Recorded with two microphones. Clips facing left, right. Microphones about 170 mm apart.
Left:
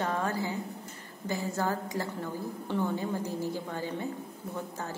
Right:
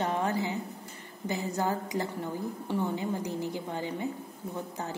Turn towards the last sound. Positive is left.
turn(degrees=-15)  # may be behind; listen again after turning